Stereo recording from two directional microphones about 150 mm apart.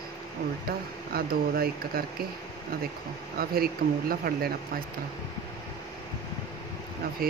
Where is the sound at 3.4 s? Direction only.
85° right.